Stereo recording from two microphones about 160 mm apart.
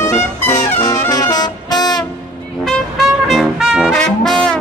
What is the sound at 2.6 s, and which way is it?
Brass instrument, centre (ahead or behind).